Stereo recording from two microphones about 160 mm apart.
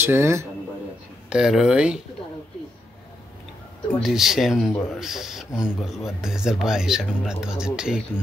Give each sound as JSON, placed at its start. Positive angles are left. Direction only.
{"t": 0.0, "sound": "speech", "side_deg": -15}
{"t": 1.3, "sound": "speech", "side_deg": -5}
{"t": 4.0, "sound": "speech", "side_deg": 0}